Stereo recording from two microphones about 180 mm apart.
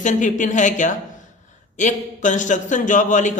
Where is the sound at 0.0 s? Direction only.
45° left (ahead or behind).